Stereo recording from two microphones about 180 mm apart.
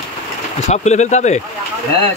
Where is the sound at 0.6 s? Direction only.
40° left (ahead or behind).